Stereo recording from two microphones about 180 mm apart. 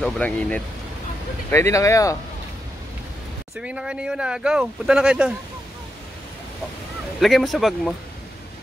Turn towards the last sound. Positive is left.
turn(degrees=0)  # may be behind; listen again after turning